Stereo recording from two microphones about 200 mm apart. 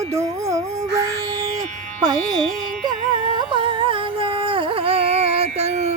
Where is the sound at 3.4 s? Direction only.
25° right (ahead or behind).